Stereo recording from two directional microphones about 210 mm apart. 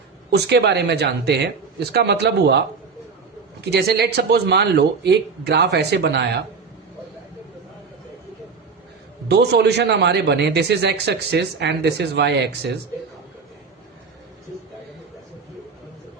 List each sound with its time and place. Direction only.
0.3 s speech: 55° right (ahead or behind)
3.6 s speech: 50° right (ahead or behind)
9.3 s speech: 50° right (ahead or behind)